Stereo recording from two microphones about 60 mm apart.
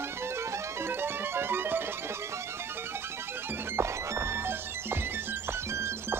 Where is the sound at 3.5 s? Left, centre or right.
Right.